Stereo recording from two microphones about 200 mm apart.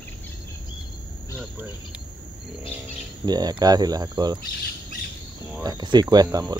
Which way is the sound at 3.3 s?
20° right (ahead or behind).